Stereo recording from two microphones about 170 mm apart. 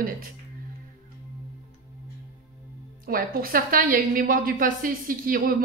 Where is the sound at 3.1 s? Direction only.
55° right (ahead or behind).